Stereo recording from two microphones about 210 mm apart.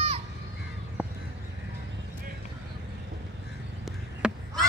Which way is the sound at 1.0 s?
5° right (ahead or behind).